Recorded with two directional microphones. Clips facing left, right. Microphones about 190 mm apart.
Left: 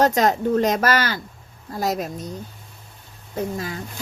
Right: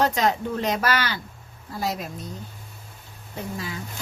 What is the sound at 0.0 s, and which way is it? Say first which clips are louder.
Speech: left 4 dB; 45° left (ahead or behind).